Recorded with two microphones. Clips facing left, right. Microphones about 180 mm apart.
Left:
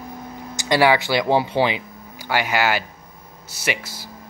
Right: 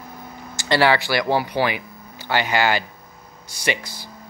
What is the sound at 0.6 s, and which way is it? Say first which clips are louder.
Speech: left 1 dB; 15° left (ahead or behind).